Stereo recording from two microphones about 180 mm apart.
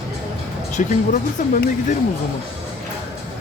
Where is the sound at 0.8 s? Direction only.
45° left (ahead or behind).